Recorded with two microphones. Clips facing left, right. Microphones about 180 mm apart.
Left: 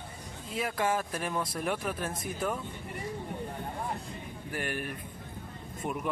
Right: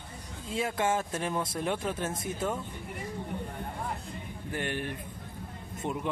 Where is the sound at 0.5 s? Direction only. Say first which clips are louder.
Right 1 dB; 25° right (ahead or behind).